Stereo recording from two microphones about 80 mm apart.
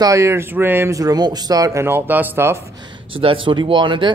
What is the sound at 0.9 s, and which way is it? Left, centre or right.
Speech, right.